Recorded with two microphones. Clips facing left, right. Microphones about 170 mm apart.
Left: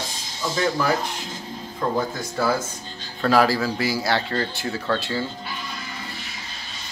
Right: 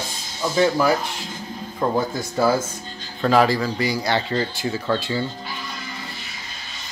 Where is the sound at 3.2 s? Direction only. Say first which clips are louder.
Right 1 dB; centre (ahead or behind).